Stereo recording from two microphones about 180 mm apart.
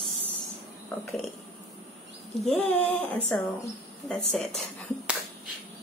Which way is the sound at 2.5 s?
5° left (ahead or behind).